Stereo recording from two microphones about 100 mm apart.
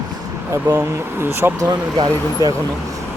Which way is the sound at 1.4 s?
30° right (ahead or behind).